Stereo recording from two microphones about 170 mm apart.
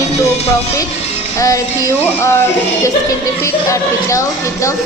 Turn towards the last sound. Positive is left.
turn(degrees=20)  # may be behind; listen again after turning